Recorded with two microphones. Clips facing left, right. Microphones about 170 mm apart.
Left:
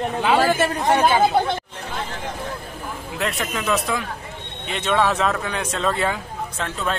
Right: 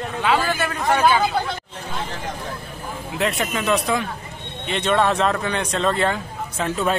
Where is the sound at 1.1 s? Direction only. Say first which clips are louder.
Left 3 dB; 25° left (ahead or behind).